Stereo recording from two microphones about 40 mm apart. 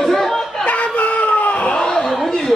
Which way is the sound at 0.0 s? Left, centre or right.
Centre.